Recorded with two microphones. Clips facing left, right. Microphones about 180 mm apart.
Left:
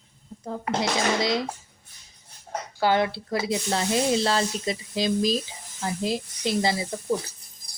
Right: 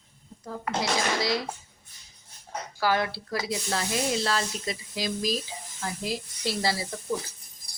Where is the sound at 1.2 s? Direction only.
20° left (ahead or behind).